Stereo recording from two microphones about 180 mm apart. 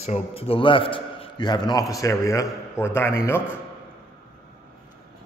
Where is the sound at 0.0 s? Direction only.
35° left (ahead or behind); by 3.2 s 15° left (ahead or behind).